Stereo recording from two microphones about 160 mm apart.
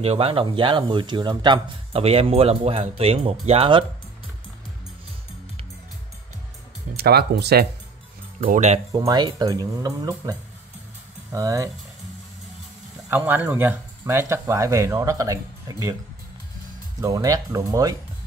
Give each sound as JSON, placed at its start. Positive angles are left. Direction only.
{"t": 0.0, "sound": "speech", "side_deg": -35}
{"t": 7.0, "sound": "speech", "side_deg": -85}
{"t": 8.4, "sound": "speech", "side_deg": -55}
{"t": 8.9, "sound": "speech", "side_deg": -25}
{"t": 11.3, "sound": "speech", "side_deg": -20}
{"t": 13.1, "sound": "speech", "side_deg": -10}
{"t": 17.0, "sound": "speech", "side_deg": -20}